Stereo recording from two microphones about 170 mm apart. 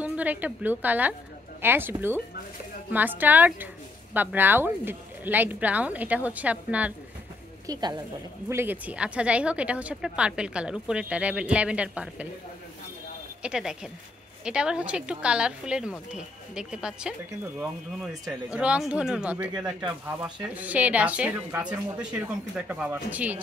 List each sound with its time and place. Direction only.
0.0 s a woman's voice: 10° right (ahead or behind)
7.6 s speech: 25° right (ahead or behind)
8.5 s speech: 15° right (ahead or behind)
13.4 s a woman's voice: 5° right (ahead or behind)
19.3 s speech: 20° right (ahead or behind)
20.5 s speech: 10° right (ahead or behind)